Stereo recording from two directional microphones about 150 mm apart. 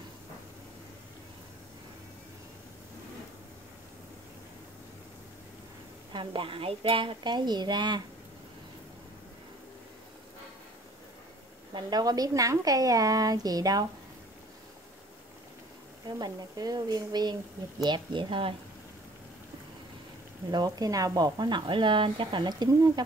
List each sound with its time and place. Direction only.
6.1 s a woman's voice: 35° right (ahead or behind)
11.7 s speech: 25° right (ahead or behind)
16.1 s a woman's voice: 25° right (ahead or behind)
20.5 s speech: 25° right (ahead or behind)